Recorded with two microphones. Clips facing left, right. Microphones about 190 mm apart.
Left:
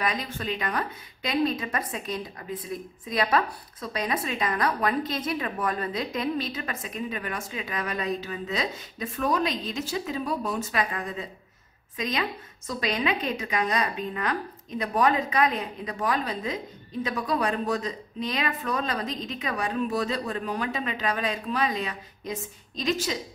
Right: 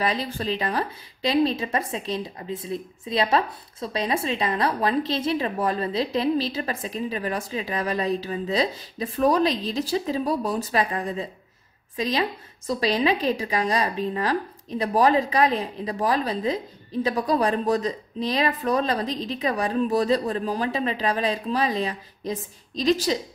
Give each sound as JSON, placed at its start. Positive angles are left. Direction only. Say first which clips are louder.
{"t": 0.0, "sound": "a woman's voice", "louder": "right 4 dB", "side_deg": -30}